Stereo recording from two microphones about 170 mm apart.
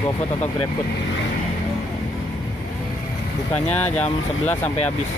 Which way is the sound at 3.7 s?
10° left (ahead or behind).